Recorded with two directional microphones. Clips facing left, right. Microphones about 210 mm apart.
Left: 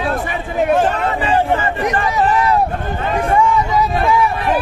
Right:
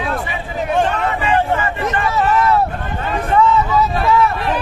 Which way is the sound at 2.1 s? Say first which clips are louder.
Right 1 dB; 15° left (ahead or behind).